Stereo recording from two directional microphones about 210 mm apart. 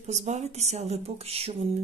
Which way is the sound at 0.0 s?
35° right (ahead or behind).